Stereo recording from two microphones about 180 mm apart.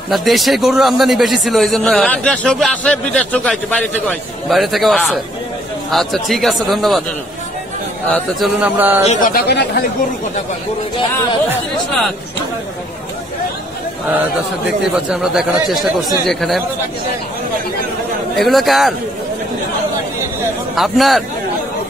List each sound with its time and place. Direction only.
0.1 s a man's voice: centre (ahead or behind)
8.5 s speech: 10° right (ahead or behind)
9.0 s speech: 45° left (ahead or behind)
9.5 s speech: 65° left (ahead or behind)
15.0 s a man's voice: centre (ahead or behind)
18.4 s a man's voice: centre (ahead or behind)
20.7 s a man's voice: centre (ahead or behind)